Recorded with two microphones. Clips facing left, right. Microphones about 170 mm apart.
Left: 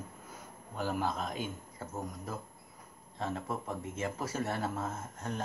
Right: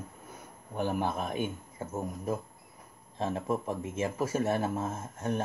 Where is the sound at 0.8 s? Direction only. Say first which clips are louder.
Right 4 dB; 20° right (ahead or behind).